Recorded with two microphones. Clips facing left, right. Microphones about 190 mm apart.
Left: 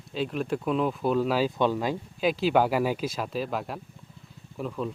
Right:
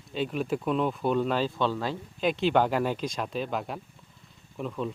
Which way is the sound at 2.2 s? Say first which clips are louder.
Left 1 dB; 5° left (ahead or behind).